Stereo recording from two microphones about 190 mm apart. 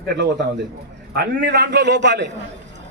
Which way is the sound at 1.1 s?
60° right (ahead or behind).